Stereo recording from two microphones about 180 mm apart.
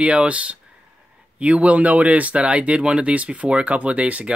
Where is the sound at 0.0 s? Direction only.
5° right (ahead or behind).